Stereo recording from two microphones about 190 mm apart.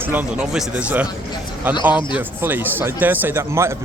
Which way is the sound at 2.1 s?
10° right (ahead or behind).